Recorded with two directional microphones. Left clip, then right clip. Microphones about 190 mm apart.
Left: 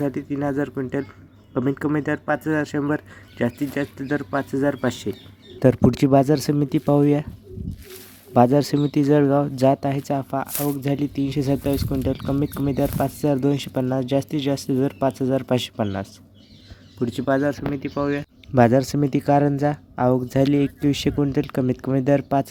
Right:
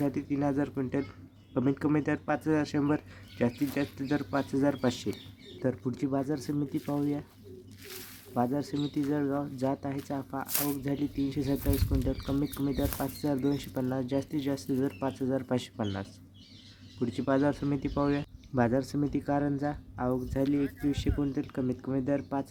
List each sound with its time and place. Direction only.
0.1 s speech: 15° left (ahead or behind)
5.5 s speech: 45° left (ahead or behind)
8.3 s speech: 45° left (ahead or behind)
17.0 s speech: 25° left (ahead or behind)
17.4 s speech: centre (ahead or behind)
18.5 s speech: 40° left (ahead or behind)